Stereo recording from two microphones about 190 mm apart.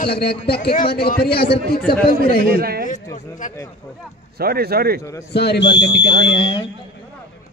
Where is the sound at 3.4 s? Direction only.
45° left (ahead or behind).